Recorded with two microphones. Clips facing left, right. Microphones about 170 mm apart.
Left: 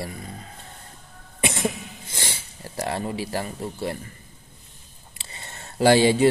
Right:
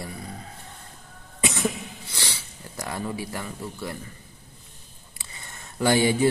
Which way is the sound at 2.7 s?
30° left (ahead or behind).